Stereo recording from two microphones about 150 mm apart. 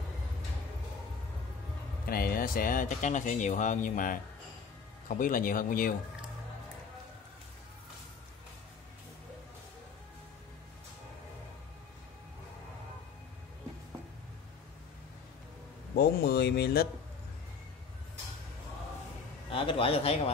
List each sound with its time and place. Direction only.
2.0 s speech: 80° left
15.9 s speech: 90° left
19.5 s a man's voice: 35° left (ahead or behind)